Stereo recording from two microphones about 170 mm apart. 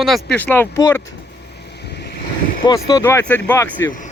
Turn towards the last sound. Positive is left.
turn(degrees=15)  # may be behind; listen again after turning